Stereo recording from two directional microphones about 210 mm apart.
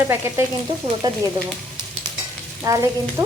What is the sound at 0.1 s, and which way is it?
Frying, 10° right (ahead or behind).